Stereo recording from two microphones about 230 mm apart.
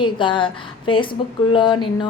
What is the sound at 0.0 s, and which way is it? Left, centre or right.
A woman's voice, left.